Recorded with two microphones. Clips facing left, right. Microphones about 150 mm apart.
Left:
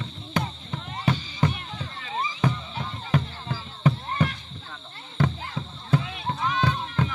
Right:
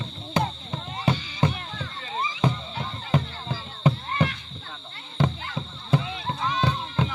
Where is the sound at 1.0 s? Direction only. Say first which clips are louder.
Right 1 dB; 25° right (ahead or behind).